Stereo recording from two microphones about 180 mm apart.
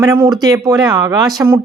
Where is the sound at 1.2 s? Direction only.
Centre (ahead or behind).